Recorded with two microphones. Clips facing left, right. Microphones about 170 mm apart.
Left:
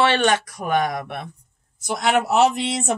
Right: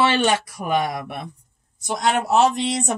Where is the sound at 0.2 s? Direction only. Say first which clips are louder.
Left 1 dB; 10° right (ahead or behind).